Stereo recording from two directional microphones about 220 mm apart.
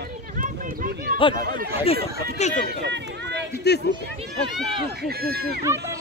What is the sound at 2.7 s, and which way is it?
Run, 50° right (ahead or behind).